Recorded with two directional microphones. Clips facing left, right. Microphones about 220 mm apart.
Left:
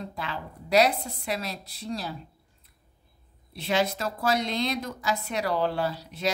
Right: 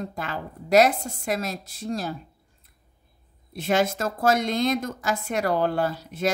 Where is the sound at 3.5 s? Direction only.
50° right (ahead or behind).